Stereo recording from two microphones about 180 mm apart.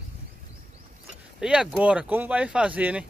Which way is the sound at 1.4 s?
5° right (ahead or behind).